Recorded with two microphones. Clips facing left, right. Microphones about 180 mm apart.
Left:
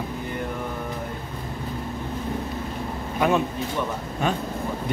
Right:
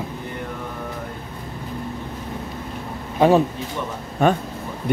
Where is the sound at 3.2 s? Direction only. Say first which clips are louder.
Right 6 dB; 30° right (ahead or behind).